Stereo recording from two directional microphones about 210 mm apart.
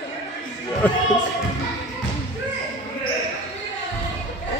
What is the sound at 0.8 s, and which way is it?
Speech, 10° left (ahead or behind).